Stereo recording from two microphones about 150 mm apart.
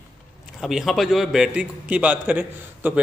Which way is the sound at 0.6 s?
Centre (ahead or behind).